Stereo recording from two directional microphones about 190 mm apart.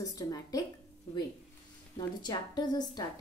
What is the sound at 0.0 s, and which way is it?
Speech, 20° left (ahead or behind).